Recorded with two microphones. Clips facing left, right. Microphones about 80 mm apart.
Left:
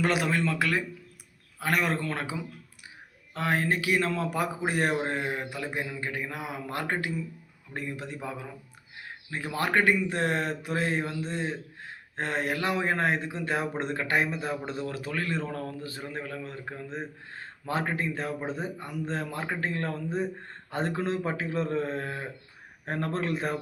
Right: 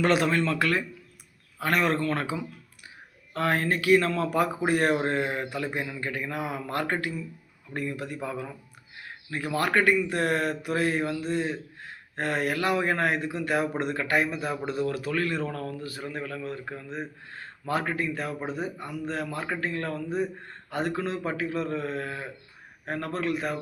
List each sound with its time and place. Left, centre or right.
0.0 s a man's voice: centre; by 23.6 s left